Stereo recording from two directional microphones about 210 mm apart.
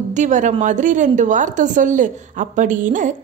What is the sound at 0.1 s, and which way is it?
A woman's voice, 35° right (ahead or behind).